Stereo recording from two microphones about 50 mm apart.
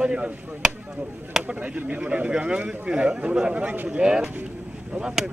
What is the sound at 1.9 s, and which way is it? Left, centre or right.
Speech, right.